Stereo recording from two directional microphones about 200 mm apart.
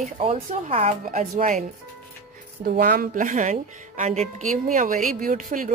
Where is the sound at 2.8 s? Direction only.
45° right (ahead or behind).